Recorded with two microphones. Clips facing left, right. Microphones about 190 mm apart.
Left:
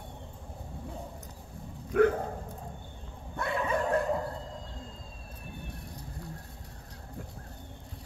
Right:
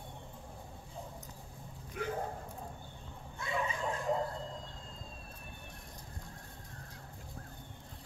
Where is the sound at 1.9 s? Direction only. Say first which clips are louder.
Left 17 dB; 60° left (ahead or behind).